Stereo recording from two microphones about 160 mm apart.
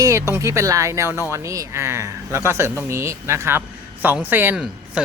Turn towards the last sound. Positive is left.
turn(degrees=-10)  # may be behind; listen again after turning